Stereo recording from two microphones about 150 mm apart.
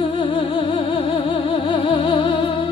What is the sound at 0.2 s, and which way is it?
Music, 35° left (ahead or behind).